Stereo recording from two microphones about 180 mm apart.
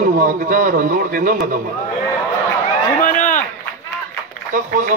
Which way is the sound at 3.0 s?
45° left (ahead or behind).